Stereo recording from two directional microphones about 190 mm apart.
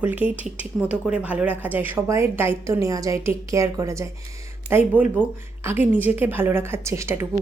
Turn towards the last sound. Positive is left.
turn(degrees=-15)  # may be behind; listen again after turning